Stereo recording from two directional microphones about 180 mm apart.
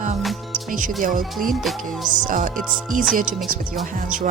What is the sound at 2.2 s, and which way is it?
Speech, 50° right (ahead or behind).